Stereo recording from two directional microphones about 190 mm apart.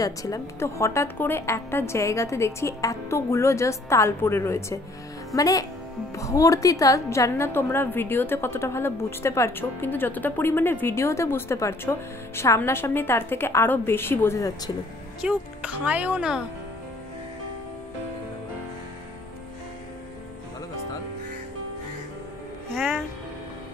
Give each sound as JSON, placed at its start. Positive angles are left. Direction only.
{"t": 0.0, "sound": "a woman's voice", "side_deg": 20}
{"t": 15.2, "sound": "speech", "side_deg": -5}
{"t": 22.8, "sound": "speech", "side_deg": 0}